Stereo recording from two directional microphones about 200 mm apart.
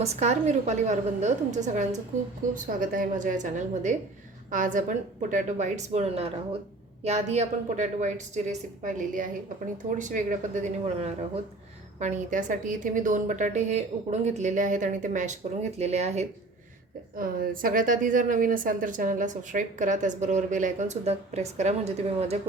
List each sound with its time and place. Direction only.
0.0 s a woman's voice: 35° right (ahead or behind)
17.2 s a woman's voice: 45° right (ahead or behind)